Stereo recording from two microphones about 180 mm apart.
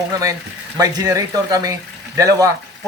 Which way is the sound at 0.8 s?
20° right (ahead or behind).